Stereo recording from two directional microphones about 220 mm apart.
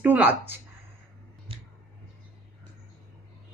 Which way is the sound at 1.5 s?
25° right (ahead or behind).